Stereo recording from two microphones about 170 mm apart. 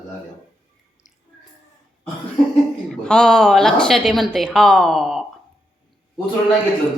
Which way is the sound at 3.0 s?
5° left (ahead or behind).